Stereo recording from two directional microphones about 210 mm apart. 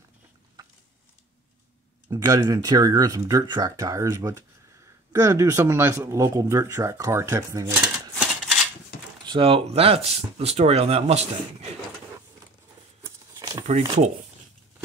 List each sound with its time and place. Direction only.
2.0 s speech: 15° right (ahead or behind)
9.2 s speech: 25° right (ahead or behind)
13.0 s a sound: 20° right (ahead or behind)
13.7 s speech: 30° right (ahead or behind)